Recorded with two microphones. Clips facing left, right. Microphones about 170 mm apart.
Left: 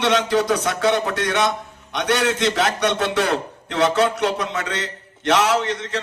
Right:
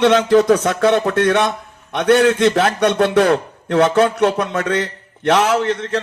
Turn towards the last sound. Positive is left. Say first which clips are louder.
# right 4 dB
turn(degrees=-55)  # may be behind; listen again after turning